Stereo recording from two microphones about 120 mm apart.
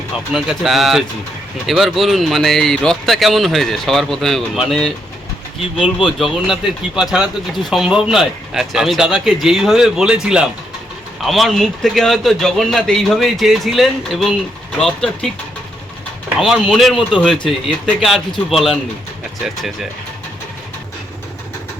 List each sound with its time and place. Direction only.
0.3 s speech: centre (ahead or behind)
16.4 s speech: centre (ahead or behind)